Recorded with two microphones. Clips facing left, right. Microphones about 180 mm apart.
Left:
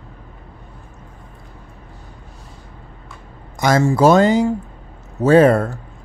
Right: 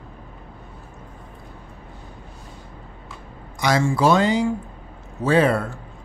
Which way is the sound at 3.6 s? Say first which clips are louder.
Left 5 dB; 45° left (ahead or behind).